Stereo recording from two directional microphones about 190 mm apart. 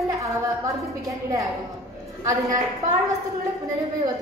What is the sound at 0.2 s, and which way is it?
A woman's voice, 20° right (ahead or behind).